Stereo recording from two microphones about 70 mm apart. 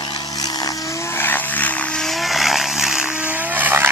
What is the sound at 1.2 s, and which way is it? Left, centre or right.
Vehicle, left.